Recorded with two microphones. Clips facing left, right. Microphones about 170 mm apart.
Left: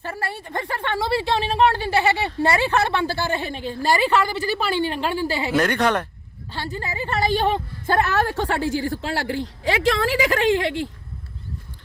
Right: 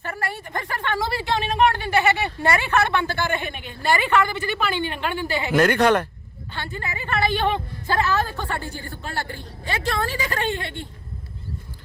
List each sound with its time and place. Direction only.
0.0 s a sound: 30° left (ahead or behind)
0.7 s a woman's voice: 25° left (ahead or behind)
5.5 s speech: centre (ahead or behind)
6.5 s a woman's voice: 35° left (ahead or behind)
7.9 s a woman's voice: 60° left (ahead or behind); by 10.8 s 90° left